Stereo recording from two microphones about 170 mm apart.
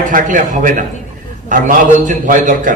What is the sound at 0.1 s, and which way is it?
A man's voice, 50° right (ahead or behind).